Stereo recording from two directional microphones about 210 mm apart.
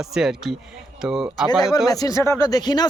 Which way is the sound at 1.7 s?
20° left (ahead or behind).